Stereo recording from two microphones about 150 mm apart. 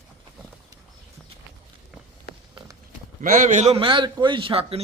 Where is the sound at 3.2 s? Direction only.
60° right (ahead or behind).